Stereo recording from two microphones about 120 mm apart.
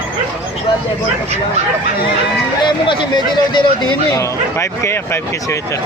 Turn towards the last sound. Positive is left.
turn(degrees=25)  # may be behind; listen again after turning